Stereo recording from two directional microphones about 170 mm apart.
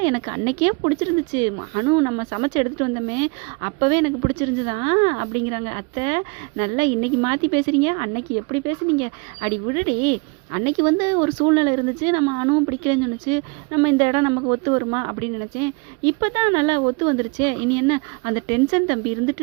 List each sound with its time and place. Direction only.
0.0 s speech: 30° right (ahead or behind)